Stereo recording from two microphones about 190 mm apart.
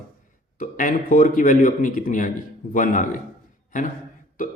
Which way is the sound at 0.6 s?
45° left (ahead or behind).